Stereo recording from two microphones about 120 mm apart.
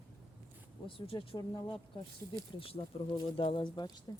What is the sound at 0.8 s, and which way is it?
Speech, 50° left (ahead or behind).